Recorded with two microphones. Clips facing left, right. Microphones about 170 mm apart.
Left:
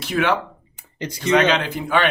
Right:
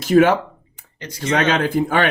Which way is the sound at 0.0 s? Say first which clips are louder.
Right 7 dB; 45° right (ahead or behind).